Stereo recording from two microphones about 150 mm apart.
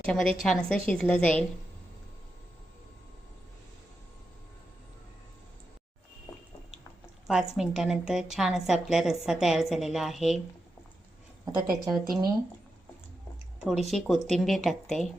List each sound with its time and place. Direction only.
0.0 s a woman's voice: 5° left (ahead or behind)
7.3 s a woman's voice: 5° right (ahead or behind)
11.4 s speech: 25° right (ahead or behind)
13.7 s a woman's voice: centre (ahead or behind)